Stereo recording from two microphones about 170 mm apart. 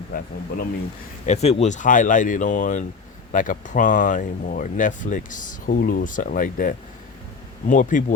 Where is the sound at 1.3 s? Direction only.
40° left (ahead or behind).